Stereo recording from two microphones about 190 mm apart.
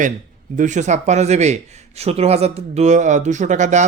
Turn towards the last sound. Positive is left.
turn(degrees=-40)  # may be behind; listen again after turning